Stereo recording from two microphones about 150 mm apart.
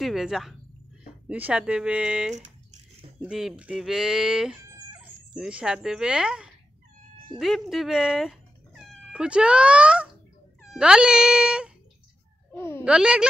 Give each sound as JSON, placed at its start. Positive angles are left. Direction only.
{"t": 0.0, "sound": "speech", "side_deg": 0}
{"t": 12.5, "sound": "a woman's voice", "side_deg": 15}
{"t": 12.8, "sound": "speech", "side_deg": -5}